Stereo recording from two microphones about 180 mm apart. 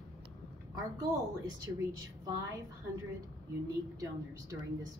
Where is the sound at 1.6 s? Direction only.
20° right (ahead or behind).